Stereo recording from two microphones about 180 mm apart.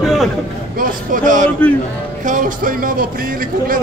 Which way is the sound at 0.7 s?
50° right (ahead or behind).